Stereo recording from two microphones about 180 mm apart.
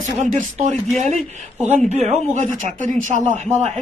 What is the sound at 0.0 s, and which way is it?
Speech, 45° right (ahead or behind).